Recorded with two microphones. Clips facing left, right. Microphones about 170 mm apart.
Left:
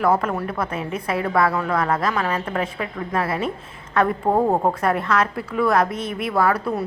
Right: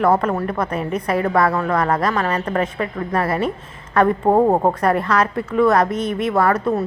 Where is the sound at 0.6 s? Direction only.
5° left (ahead or behind).